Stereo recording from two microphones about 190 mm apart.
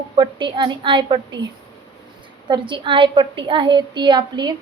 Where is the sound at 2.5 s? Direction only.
25° right (ahead or behind).